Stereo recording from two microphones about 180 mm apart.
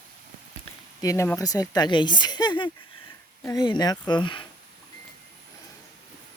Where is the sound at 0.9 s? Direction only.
15° left (ahead or behind).